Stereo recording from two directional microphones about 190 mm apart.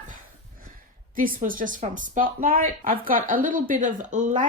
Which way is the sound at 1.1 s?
45° right (ahead or behind).